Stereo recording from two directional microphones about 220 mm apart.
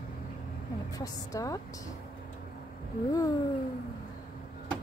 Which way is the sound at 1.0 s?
15° left (ahead or behind).